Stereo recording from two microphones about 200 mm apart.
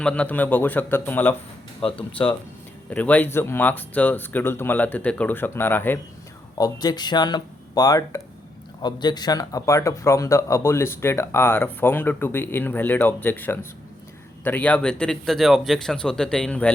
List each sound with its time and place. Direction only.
0.0 s speech: 5° left (ahead or behind)